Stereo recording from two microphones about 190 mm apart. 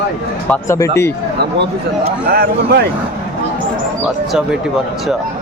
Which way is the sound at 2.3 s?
55° right (ahead or behind).